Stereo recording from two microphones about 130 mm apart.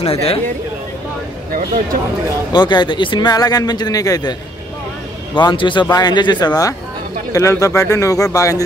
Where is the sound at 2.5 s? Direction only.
35° left (ahead or behind).